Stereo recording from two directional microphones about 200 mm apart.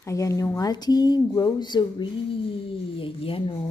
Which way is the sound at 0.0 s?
15° left (ahead or behind).